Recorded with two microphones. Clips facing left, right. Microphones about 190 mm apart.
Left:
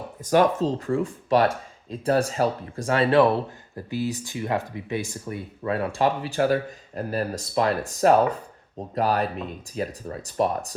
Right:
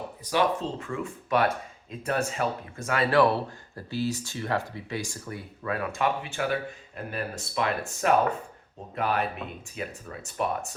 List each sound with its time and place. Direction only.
0.3 s speech: 45° left (ahead or behind)